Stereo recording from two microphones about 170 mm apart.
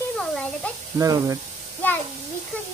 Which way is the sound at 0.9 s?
20° right (ahead or behind).